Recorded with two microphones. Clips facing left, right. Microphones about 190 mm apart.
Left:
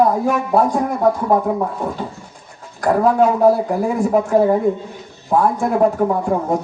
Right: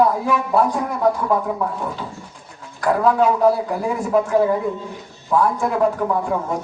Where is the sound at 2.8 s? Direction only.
45° left (ahead or behind).